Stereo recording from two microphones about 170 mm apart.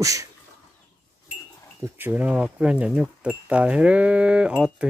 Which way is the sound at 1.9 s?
10° right (ahead or behind).